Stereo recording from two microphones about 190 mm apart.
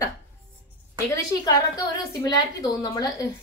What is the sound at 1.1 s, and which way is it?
A woman's voice, 20° left (ahead or behind).